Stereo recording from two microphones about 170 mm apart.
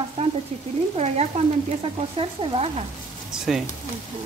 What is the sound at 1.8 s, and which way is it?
Sizzle, 30° right (ahead or behind).